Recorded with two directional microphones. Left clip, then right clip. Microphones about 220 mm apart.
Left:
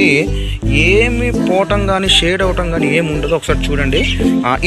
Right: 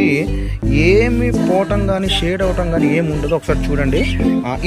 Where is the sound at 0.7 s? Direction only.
55° right (ahead or behind).